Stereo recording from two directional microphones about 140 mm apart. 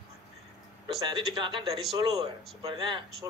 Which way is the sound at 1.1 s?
35° right (ahead or behind).